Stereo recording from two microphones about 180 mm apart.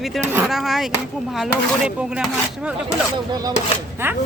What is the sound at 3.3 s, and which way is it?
Speech, 20° right (ahead or behind).